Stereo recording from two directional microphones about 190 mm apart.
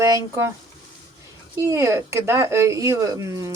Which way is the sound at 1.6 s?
15° right (ahead or behind).